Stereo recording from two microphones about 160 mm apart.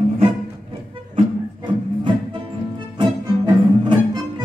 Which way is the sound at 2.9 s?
30° right (ahead or behind).